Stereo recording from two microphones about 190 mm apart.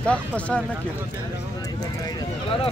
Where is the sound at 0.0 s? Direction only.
5° left (ahead or behind).